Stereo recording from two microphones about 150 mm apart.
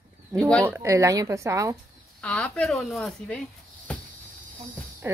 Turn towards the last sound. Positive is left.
turn(degrees=5)  # may be behind; listen again after turning